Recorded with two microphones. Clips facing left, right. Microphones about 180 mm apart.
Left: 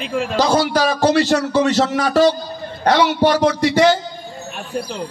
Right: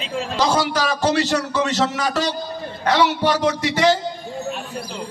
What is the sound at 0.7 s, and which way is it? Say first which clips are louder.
A man's voice: left 4 dB; 45° left (ahead or behind).